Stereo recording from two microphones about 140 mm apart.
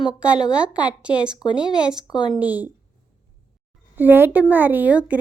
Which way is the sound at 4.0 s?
15° right (ahead or behind).